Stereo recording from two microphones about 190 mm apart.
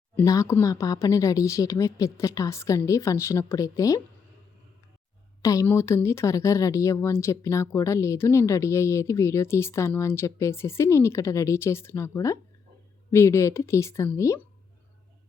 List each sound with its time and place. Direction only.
0.2 s speech: 15° left (ahead or behind)
5.4 s speech: 15° left (ahead or behind)